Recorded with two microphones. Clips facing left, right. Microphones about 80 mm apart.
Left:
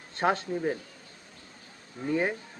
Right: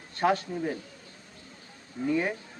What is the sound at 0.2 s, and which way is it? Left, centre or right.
Speech, left.